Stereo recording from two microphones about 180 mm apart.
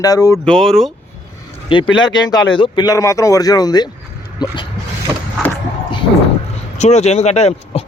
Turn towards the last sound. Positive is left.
turn(degrees=35)  # may be behind; listen again after turning